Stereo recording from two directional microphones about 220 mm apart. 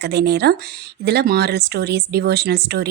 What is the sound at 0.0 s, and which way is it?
A woman's voice, 50° right (ahead or behind).